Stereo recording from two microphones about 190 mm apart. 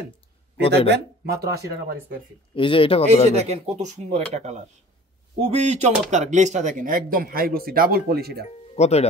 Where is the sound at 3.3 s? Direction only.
35° right (ahead or behind); by 8.4 s 55° right (ahead or behind).